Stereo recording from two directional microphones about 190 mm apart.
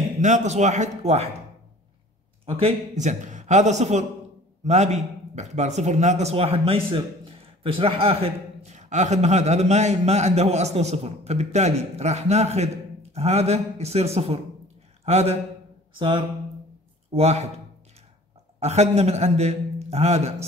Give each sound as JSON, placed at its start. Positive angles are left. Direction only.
{"t": 0.2, "sound": "a man's voice", "side_deg": -40}
{"t": 2.4, "sound": "a man's voice", "side_deg": -35}
{"t": 18.6, "sound": "a man's voice", "side_deg": -35}